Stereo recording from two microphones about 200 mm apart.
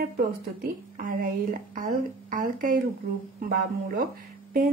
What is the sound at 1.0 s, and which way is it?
A woman's voice, 45° right (ahead or behind).